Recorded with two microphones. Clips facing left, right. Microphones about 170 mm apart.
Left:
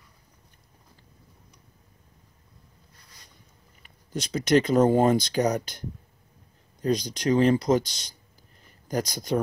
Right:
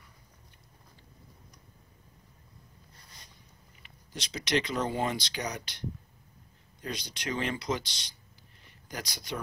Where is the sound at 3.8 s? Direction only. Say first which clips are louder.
Left 10 dB; 50° left (ahead or behind).